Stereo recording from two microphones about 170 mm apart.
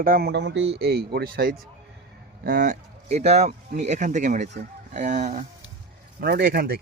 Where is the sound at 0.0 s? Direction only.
60° right (ahead or behind); by 0.6 s 90° right.